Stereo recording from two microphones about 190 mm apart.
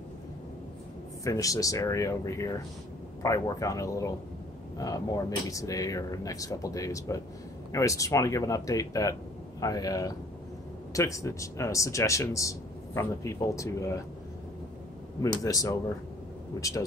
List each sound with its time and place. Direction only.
1.2 s a man's voice: 15° left (ahead or behind)
15.4 s speech: 20° left (ahead or behind)